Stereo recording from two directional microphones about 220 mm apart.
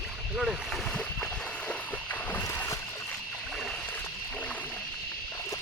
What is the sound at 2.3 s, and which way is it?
Boat, 10° left (ahead or behind).